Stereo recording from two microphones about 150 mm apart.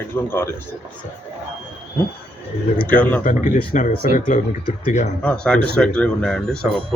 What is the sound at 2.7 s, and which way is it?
Speech, 10° left (ahead or behind).